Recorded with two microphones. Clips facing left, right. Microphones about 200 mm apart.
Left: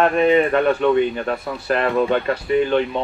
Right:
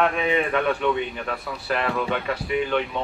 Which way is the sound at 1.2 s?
25° left (ahead or behind).